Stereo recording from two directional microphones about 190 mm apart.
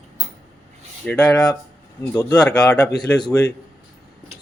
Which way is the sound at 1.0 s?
5° left (ahead or behind).